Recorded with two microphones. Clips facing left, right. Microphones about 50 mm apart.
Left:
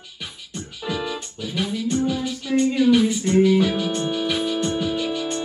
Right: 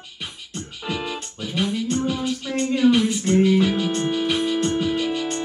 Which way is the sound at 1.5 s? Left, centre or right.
Right.